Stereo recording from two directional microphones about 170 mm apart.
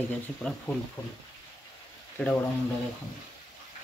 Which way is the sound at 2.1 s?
5° left (ahead or behind).